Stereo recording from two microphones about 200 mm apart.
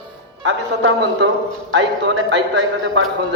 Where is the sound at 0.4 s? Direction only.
60° right (ahead or behind).